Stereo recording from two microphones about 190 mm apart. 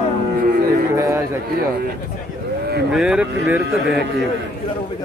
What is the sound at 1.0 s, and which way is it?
Speech, 15° right (ahead or behind).